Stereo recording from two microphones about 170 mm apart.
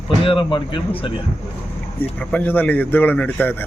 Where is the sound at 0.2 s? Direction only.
30° left (ahead or behind).